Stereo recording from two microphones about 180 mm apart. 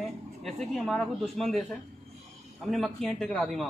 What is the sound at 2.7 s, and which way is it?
Speech, centre (ahead or behind).